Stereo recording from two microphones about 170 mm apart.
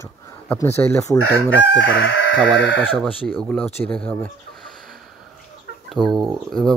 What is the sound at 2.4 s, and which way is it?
Speech, 5° left (ahead or behind).